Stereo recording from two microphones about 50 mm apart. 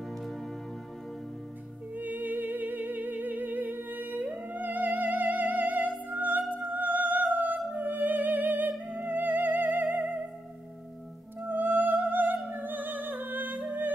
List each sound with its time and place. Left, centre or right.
2.0 s music: right
11.4 s music: right